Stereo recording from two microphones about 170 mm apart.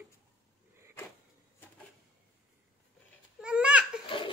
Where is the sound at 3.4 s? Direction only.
5° right (ahead or behind).